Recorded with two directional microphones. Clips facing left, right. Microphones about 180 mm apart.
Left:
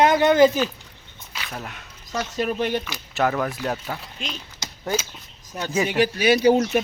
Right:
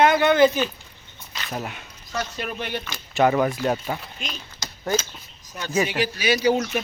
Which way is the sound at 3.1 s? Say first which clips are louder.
Right 4 dB; centre (ahead or behind).